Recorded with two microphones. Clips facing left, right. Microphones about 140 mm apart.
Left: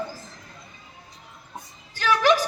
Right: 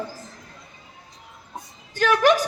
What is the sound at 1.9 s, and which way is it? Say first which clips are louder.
Speech: right 2 dB; 50° right (ahead or behind).